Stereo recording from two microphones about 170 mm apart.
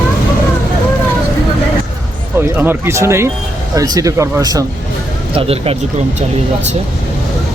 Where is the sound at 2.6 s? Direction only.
15° right (ahead or behind).